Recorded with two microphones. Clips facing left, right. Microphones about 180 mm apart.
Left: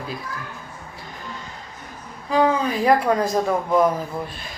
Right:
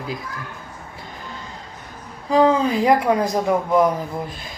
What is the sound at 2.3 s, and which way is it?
A woman's voice, 30° right (ahead or behind).